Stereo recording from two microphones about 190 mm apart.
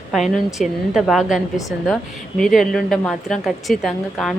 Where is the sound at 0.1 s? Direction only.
Centre (ahead or behind).